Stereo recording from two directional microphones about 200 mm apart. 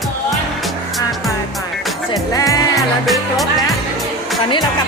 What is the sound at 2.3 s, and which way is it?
Music, 15° left (ahead or behind).